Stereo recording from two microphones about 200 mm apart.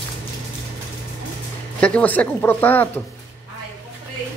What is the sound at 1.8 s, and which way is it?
Speech, 5° left (ahead or behind).